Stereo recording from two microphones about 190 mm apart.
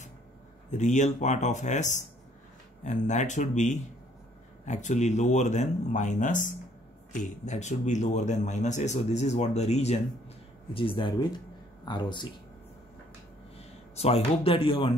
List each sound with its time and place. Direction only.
0.7 s a man's voice: 40° left (ahead or behind); by 12.3 s 25° left (ahead or behind)
13.9 s speech: 30° left (ahead or behind)